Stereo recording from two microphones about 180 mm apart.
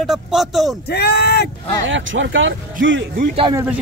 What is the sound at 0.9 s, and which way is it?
Speech, 65° left (ahead or behind).